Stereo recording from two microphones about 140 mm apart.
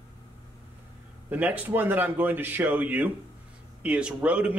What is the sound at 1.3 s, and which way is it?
A man's voice, 10° right (ahead or behind).